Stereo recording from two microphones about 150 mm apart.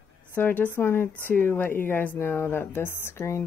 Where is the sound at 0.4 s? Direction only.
15° left (ahead or behind).